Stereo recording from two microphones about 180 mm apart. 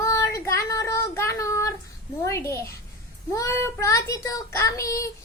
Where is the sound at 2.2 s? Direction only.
15° left (ahead or behind).